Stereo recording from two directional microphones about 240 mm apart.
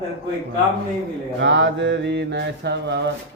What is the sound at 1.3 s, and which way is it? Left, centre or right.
A man's voice, right.